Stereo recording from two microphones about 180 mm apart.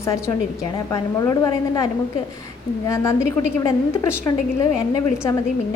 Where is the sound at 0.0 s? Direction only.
15° left (ahead or behind).